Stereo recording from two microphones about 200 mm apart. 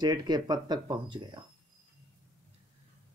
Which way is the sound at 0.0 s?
20° right (ahead or behind).